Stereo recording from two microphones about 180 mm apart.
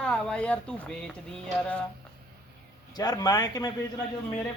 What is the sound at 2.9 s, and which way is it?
A man's voice, 20° left (ahead or behind).